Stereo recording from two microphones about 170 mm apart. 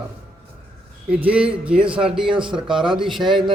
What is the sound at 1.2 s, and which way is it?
A man's voice, 5° right (ahead or behind).